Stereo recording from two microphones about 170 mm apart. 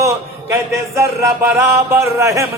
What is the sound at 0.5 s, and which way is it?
Music, 15° right (ahead or behind).